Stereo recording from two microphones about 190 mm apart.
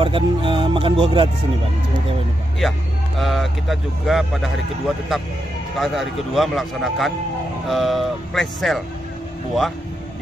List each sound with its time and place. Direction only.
0.0 s speech: 25° right (ahead or behind)
3.2 s speech: centre (ahead or behind)